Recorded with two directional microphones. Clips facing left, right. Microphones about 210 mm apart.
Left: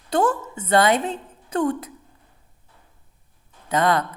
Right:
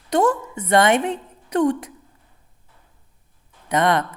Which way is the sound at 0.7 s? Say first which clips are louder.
Right 2 dB; 25° right (ahead or behind).